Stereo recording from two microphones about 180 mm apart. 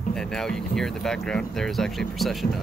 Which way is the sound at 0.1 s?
5° left (ahead or behind).